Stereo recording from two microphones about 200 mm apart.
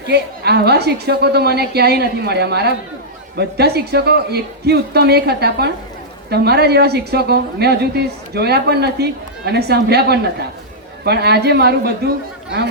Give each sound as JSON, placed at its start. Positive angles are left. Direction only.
{"t": 0.1, "sound": "speech", "side_deg": -55}